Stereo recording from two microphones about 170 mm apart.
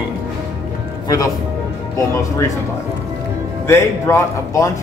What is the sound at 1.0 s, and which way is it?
Speech, 20° left (ahead or behind).